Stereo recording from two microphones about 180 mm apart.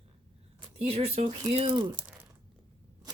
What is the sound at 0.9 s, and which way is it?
Speech, 35° right (ahead or behind).